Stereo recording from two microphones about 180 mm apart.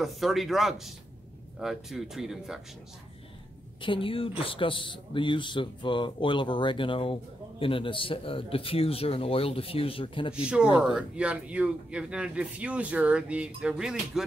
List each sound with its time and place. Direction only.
0.0 s speech: centre (ahead or behind)
3.8 s speech: 30° left (ahead or behind)
10.3 s speech: 5° right (ahead or behind)